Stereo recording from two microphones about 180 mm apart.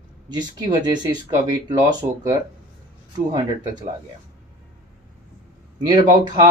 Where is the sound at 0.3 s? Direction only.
25° right (ahead or behind).